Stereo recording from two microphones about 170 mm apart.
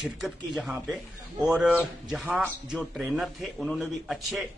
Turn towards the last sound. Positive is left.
turn(degrees=0)  # may be behind; listen again after turning